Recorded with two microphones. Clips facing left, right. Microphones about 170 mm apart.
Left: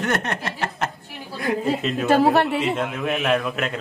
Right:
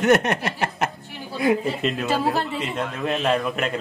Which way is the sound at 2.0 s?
60° left (ahead or behind).